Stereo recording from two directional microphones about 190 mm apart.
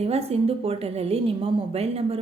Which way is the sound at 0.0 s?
35° right (ahead or behind).